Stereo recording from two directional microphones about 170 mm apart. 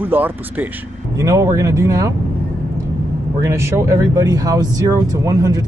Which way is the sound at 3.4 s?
15° right (ahead or behind).